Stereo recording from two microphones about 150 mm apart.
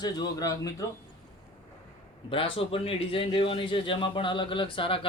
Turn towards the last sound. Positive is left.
turn(degrees=35)  # may be behind; listen again after turning